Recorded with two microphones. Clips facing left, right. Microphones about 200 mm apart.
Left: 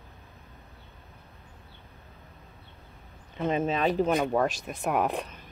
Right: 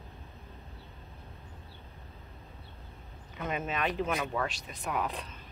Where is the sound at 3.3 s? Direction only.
30° left (ahead or behind); by 5.4 s 55° left (ahead or behind).